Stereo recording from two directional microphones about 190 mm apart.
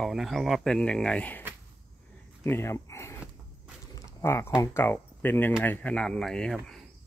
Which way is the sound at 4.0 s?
15° left (ahead or behind).